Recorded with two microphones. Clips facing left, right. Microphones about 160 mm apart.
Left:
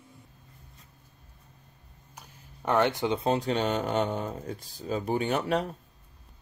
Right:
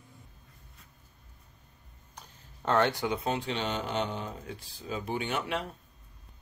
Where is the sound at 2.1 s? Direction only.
10° left (ahead or behind); by 5.7 s 40° left (ahead or behind).